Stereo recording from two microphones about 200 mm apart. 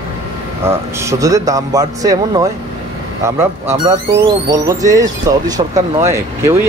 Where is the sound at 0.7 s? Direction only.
15° right (ahead or behind).